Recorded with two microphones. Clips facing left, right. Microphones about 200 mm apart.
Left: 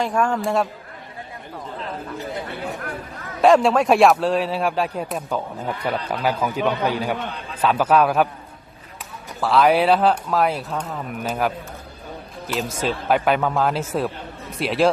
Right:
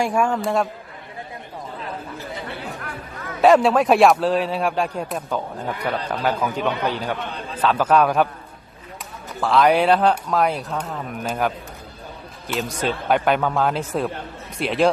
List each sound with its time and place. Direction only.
0.0 s a man's voice: 10° right (ahead or behind)
2.3 s chatter: 55° left (ahead or behind)
3.4 s a man's voice: centre (ahead or behind)
9.4 s speech: centre (ahead or behind)
12.8 s speech: centre (ahead or behind)